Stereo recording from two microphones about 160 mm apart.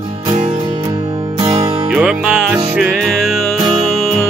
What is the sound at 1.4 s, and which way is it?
Music, 40° right (ahead or behind).